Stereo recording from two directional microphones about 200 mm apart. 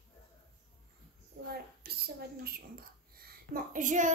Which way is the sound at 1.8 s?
50° right (ahead or behind).